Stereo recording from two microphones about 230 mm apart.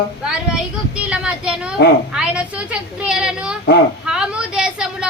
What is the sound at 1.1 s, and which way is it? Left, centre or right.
A woman's voice, centre.